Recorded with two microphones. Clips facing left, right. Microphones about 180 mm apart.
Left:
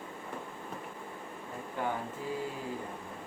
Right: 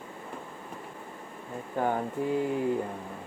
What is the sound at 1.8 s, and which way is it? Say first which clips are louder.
Mantra: right 7 dB; 55° right (ahead or behind).